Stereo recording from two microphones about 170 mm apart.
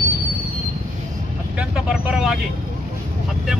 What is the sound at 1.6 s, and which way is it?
Speech, 5° right (ahead or behind).